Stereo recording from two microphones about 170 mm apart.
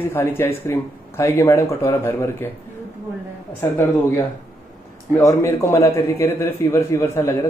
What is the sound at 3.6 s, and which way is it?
Speech, 15° left (ahead or behind).